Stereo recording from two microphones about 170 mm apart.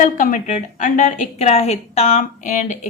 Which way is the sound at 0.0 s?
50° left (ahead or behind).